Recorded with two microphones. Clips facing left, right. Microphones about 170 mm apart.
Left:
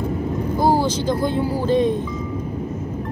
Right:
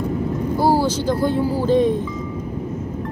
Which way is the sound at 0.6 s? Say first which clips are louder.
Right 1 dB; 15° left (ahead or behind).